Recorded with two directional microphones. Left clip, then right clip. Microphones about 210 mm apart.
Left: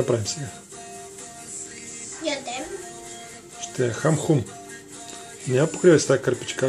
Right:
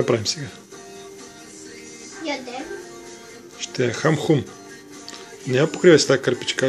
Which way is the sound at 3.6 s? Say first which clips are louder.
Right 2 dB; 5° right (ahead or behind).